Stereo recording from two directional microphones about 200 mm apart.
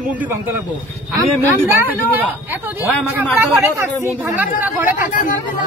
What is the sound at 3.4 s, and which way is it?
Speech, 10° right (ahead or behind).